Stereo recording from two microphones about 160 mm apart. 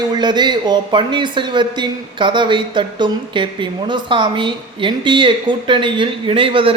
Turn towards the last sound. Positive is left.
turn(degrees=-35)  # may be behind; listen again after turning